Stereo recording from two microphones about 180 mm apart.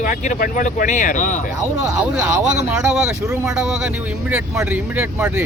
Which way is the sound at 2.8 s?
5° right (ahead or behind).